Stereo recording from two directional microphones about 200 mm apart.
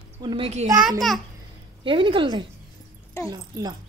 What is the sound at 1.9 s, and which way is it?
A woman's voice, 25° right (ahead or behind).